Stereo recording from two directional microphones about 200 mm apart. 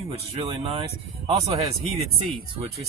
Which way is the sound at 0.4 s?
25° right (ahead or behind).